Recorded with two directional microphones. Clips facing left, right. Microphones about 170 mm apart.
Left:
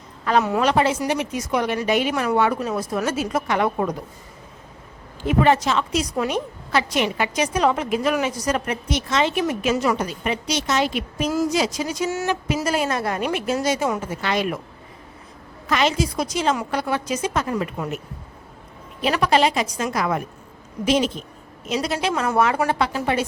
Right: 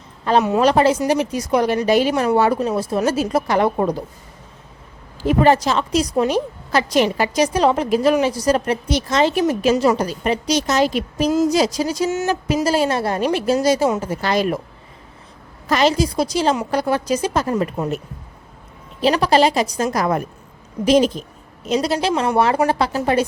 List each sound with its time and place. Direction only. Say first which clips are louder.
0.3 s a woman's voice: right 4 dB; 30° right (ahead or behind)
5.2 s a woman's voice: right 3 dB; 35° right (ahead or behind)
15.7 s a woman's voice: right 4 dB; 35° right (ahead or behind)
18.9 s a woman's voice: right 4 dB; 30° right (ahead or behind)